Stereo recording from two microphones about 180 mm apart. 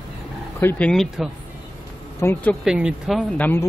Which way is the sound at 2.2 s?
15° left (ahead or behind).